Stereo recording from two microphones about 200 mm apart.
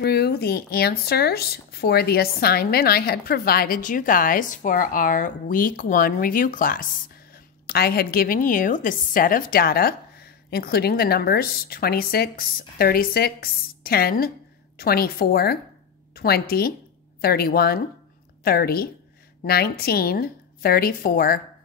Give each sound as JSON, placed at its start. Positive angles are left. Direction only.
{"t": 0.0, "sound": "speech", "side_deg": 55}